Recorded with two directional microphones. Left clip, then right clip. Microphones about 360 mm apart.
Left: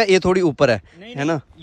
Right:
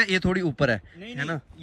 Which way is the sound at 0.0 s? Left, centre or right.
Centre.